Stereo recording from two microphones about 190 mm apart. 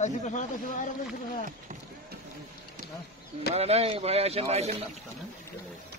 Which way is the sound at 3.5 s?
35° right (ahead or behind).